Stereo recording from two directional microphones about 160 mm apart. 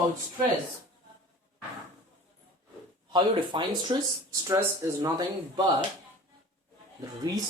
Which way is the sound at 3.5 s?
30° right (ahead or behind).